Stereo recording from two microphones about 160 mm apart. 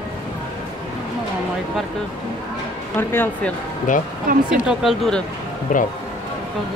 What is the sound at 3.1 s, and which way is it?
Speech, 15° left (ahead or behind).